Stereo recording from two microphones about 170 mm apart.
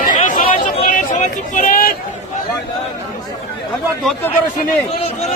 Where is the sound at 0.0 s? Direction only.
50° left (ahead or behind).